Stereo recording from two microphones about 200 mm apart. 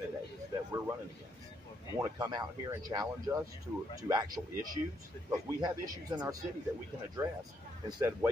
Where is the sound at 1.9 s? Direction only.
15° right (ahead or behind).